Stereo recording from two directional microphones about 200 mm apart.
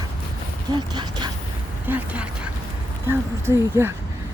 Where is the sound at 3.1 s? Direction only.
10° right (ahead or behind).